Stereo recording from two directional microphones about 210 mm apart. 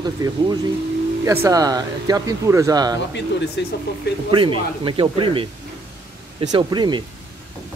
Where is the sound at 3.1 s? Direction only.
55° left (ahead or behind).